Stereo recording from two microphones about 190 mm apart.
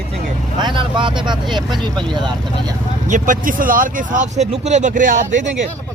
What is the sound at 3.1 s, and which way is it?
Speech, 40° right (ahead or behind).